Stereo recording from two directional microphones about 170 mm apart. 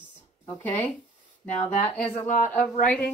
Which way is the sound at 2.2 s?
50° left (ahead or behind).